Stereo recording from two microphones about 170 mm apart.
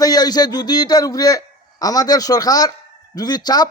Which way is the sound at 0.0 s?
25° left (ahead or behind).